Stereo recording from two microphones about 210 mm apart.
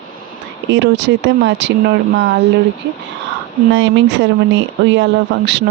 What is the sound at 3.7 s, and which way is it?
Speech, 60° right (ahead or behind).